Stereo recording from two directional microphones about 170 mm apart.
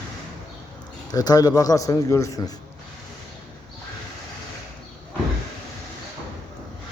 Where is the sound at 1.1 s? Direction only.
20° left (ahead or behind).